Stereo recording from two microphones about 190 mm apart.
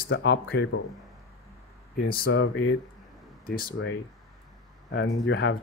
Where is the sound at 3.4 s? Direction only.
50° left (ahead or behind).